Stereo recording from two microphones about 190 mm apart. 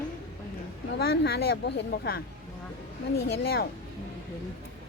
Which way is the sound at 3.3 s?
60° left (ahead or behind).